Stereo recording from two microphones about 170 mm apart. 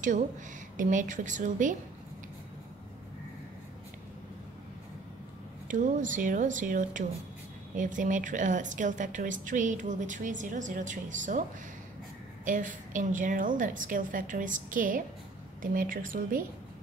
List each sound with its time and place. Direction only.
0.7 s speech: 50° right (ahead or behind)
5.7 s speech: 50° right (ahead or behind)
12.4 s speech: 50° right (ahead or behind)